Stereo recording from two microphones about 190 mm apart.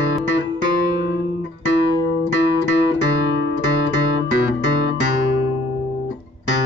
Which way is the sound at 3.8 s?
70° left (ahead or behind).